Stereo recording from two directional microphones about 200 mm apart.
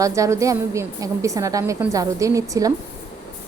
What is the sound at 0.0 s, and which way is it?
A woman's voice, 15° right (ahead or behind).